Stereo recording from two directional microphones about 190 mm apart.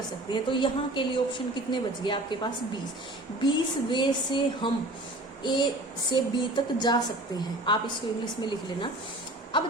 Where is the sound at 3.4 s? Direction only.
25° left (ahead or behind).